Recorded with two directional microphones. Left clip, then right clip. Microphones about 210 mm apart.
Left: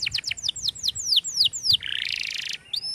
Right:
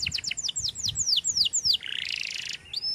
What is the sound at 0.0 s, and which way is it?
Bird, 30° left (ahead or behind).